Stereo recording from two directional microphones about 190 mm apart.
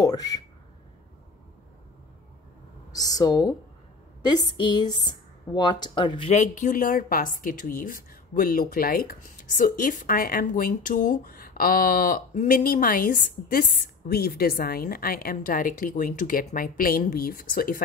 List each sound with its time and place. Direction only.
0.0 s speech: 20° left (ahead or behind)
2.9 s speech: 20° left (ahead or behind)
6.3 s a woman's voice: 40° left (ahead or behind)